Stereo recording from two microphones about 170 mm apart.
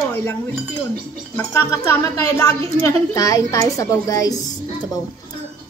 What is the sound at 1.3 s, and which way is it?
A woman's voice, 15° left (ahead or behind).